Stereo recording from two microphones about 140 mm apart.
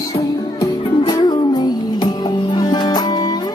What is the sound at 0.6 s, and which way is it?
Music, 30° left (ahead or behind).